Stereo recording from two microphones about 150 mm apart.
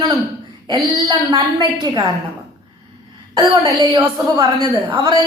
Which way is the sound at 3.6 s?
30° right (ahead or behind).